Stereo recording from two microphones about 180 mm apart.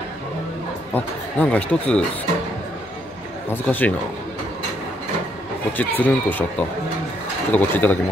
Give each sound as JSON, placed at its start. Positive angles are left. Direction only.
{"t": 0.9, "sound": "speech", "side_deg": 10}
{"t": 3.4, "sound": "speech", "side_deg": 10}
{"t": 5.7, "sound": "speech", "side_deg": 10}
{"t": 7.5, "sound": "speech", "side_deg": 10}